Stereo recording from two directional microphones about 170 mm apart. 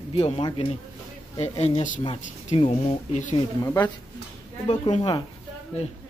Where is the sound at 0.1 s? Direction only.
35° left (ahead or behind).